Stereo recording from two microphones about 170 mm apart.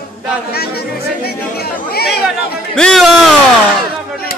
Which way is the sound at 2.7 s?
5° left (ahead or behind).